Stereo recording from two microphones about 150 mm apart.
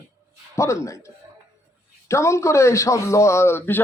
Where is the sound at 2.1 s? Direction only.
20° left (ahead or behind).